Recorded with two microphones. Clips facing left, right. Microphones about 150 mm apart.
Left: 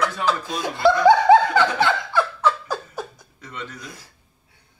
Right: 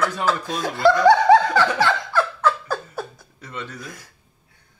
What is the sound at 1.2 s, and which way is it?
Laughter, 20° left (ahead or behind).